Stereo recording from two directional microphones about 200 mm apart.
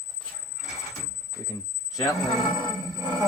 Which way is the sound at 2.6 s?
20° right (ahead or behind).